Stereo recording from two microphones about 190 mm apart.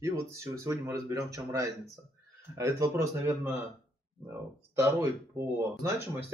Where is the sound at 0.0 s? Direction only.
15° right (ahead or behind).